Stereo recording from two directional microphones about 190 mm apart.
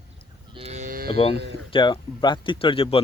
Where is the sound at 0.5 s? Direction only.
35° right (ahead or behind); by 1.2 s 50° right (ahead or behind).